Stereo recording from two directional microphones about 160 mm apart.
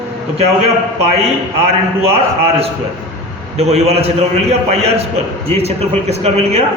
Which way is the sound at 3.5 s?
40° right (ahead or behind).